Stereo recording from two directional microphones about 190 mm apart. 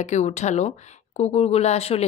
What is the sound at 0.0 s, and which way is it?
A woman's voice, 35° left (ahead or behind).